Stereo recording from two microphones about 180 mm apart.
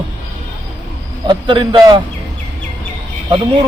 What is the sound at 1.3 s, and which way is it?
Speech, 25° right (ahead or behind).